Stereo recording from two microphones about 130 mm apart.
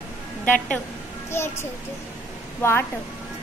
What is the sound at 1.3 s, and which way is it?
Speech, 20° left (ahead or behind).